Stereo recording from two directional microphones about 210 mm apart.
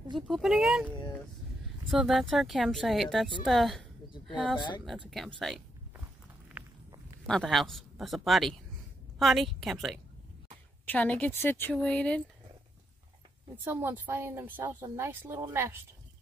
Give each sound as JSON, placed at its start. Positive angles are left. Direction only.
{"t": 0.3, "sound": "speech", "side_deg": 0}
{"t": 4.6, "sound": "speech", "side_deg": 20}
{"t": 5.1, "sound": "speech", "side_deg": 0}
{"t": 6.6, "sound": "walk", "side_deg": -5}
{"t": 7.2, "sound": "a woman's voice", "side_deg": 0}
{"t": 13.7, "sound": "a woman's voice", "side_deg": -10}